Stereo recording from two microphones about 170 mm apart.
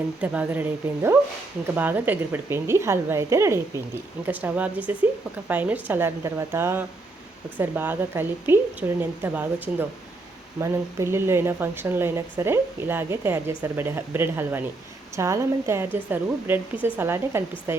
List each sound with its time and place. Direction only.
0.2 s speech: 10° right (ahead or behind)